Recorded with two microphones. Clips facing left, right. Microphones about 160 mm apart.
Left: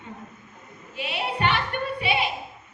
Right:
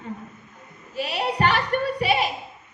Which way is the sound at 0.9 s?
40° right (ahead or behind).